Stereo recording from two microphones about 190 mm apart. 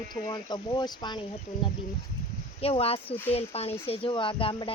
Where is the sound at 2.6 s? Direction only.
30° left (ahead or behind).